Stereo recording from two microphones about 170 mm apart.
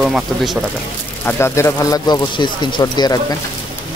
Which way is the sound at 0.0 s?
Centre (ahead or behind).